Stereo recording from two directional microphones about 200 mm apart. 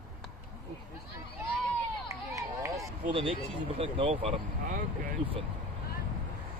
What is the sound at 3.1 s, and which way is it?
Speech, 30° right (ahead or behind).